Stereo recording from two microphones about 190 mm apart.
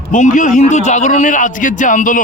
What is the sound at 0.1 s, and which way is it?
A man's voice, 40° left (ahead or behind).